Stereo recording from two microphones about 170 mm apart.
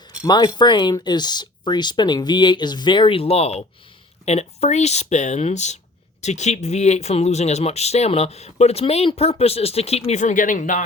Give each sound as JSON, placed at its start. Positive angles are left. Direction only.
{"t": 0.3, "sound": "speech", "side_deg": 25}